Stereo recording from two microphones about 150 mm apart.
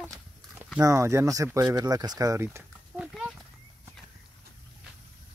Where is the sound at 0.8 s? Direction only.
20° right (ahead or behind).